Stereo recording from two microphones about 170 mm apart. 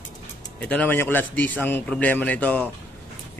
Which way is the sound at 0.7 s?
10° left (ahead or behind).